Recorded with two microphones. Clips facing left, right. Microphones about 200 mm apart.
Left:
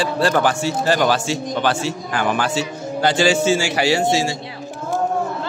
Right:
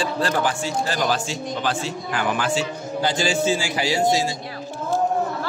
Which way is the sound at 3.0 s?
75° left (ahead or behind).